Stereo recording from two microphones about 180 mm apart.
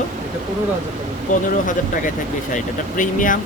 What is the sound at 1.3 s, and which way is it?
Speech, 45° left (ahead or behind).